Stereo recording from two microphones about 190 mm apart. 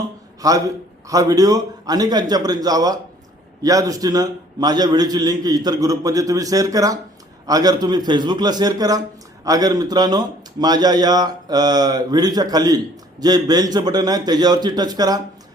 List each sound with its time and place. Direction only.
0.4 s a man's voice: 20° right (ahead or behind)